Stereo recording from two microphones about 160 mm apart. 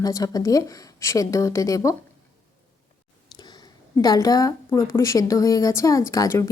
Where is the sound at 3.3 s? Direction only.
25° left (ahead or behind).